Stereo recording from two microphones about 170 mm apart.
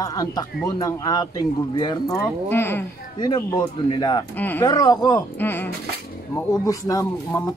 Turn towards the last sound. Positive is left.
turn(degrees=20)  # may be behind; listen again after turning